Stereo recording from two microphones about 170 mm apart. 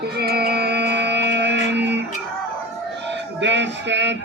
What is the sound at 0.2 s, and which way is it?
Music, 70° right (ahead or behind).